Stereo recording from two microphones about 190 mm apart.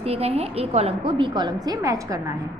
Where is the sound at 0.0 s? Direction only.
30° right (ahead or behind).